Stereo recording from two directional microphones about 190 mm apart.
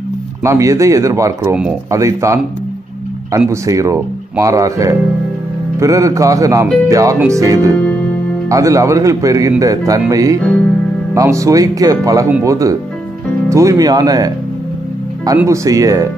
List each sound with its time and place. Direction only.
0.4 s speech: 15° right (ahead or behind)
15.3 s speech: 15° right (ahead or behind)